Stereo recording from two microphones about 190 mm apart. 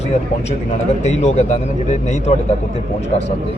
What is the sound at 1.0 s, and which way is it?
Speech, 35° left (ahead or behind).